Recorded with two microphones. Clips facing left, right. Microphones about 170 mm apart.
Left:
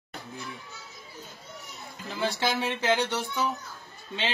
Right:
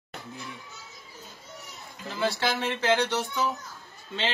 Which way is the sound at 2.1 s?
15° left (ahead or behind).